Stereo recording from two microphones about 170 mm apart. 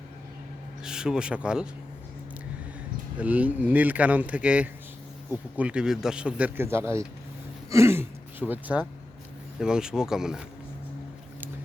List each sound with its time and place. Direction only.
0.9 s speech: 5° right (ahead or behind)
3.2 s speech: 10° right (ahead or behind)